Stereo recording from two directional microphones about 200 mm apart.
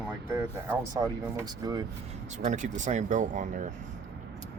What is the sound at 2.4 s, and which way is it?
Speech, 35° right (ahead or behind).